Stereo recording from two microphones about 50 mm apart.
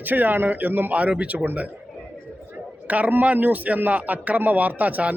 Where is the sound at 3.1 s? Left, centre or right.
Right.